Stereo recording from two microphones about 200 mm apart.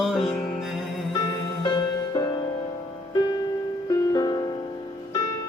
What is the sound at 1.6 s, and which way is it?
Music, 25° left (ahead or behind).